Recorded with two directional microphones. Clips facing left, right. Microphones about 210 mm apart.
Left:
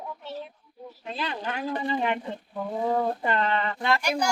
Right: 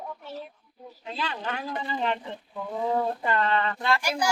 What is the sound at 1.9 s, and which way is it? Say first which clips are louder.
Speech: left 2 dB; 15° left (ahead or behind).